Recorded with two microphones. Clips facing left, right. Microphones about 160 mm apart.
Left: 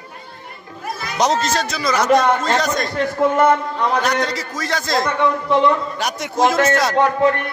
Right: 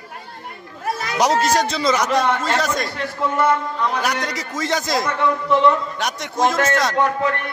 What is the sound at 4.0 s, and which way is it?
A man's voice, 10° right (ahead or behind).